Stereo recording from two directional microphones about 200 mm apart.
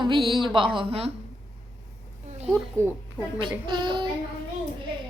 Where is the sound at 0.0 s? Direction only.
25° right (ahead or behind).